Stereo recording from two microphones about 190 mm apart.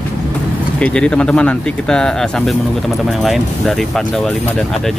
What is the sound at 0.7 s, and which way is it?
Speech, 5° left (ahead or behind).